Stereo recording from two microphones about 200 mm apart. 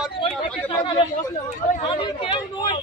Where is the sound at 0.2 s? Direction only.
25° left (ahead or behind).